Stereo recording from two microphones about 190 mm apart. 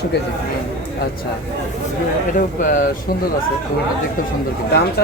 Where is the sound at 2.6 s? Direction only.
45° left (ahead or behind).